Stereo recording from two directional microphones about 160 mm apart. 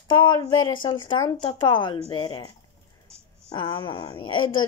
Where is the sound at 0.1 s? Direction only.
30° left (ahead or behind).